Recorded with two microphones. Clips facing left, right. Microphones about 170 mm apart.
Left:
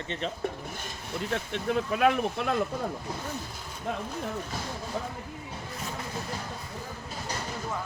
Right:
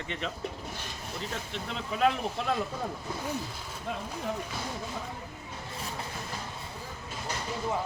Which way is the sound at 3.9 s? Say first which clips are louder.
Left 3 dB; 60° left (ahead or behind).